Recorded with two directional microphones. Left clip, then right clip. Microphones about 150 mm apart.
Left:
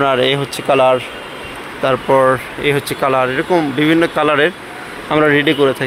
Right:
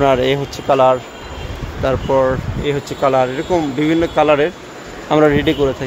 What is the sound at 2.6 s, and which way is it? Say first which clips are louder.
Speech: right 1 dB; 10° left (ahead or behind).